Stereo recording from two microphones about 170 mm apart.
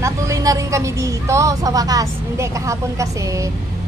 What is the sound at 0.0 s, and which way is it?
A woman's voice, 20° right (ahead or behind).